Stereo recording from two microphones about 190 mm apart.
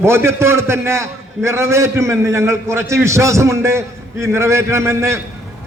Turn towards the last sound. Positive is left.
turn(degrees=-15)  # may be behind; listen again after turning